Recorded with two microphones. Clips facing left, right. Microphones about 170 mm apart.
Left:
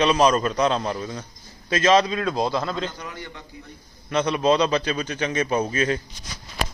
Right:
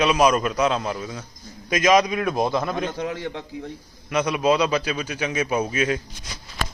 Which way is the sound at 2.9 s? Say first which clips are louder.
Right 9 dB; 90° right.